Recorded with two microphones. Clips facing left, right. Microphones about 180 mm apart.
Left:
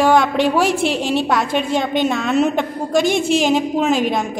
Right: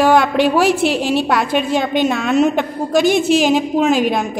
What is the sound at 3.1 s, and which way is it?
Speech, 25° left (ahead or behind).